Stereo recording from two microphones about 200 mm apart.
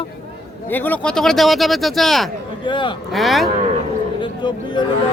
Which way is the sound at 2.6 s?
25° left (ahead or behind).